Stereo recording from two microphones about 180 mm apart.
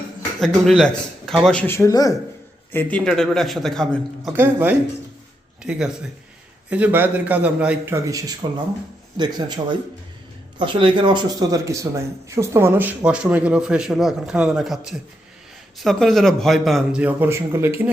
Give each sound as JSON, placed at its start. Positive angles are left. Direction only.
{"t": 0.3, "sound": "a man's voice", "side_deg": 0}
{"t": 2.7, "sound": "a man's voice", "side_deg": 5}
{"t": 4.4, "sound": "a man's voice", "side_deg": -10}
{"t": 10.6, "sound": "a man's voice", "side_deg": -25}